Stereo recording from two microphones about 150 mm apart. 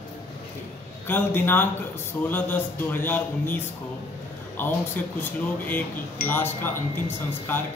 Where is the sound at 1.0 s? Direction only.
15° left (ahead or behind).